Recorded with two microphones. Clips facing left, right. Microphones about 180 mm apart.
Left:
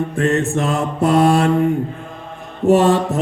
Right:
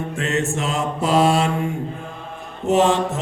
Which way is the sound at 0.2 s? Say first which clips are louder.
Left 5 dB; 55° left (ahead or behind).